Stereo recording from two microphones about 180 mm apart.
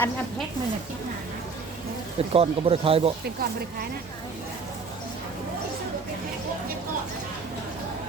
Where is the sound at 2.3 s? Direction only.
30° right (ahead or behind).